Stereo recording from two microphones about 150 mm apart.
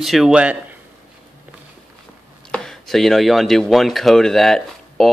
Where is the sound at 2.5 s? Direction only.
5° left (ahead or behind).